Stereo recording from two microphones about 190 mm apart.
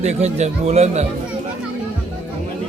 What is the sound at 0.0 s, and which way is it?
Speech, 35° right (ahead or behind).